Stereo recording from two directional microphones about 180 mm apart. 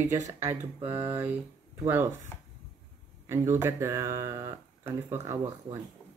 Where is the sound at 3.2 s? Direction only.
15° right (ahead or behind).